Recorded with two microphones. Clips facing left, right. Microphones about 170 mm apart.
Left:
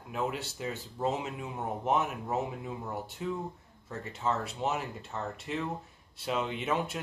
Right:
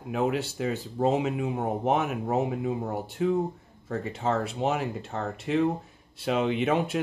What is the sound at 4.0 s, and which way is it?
Speech, 90° right.